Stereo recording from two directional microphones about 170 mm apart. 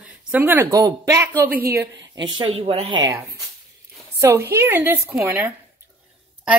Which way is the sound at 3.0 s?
15° right (ahead or behind).